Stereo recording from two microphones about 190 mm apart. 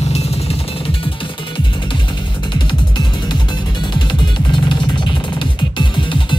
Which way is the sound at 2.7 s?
25° left (ahead or behind).